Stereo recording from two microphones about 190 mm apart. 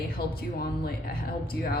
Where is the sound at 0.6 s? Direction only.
55° left (ahead or behind).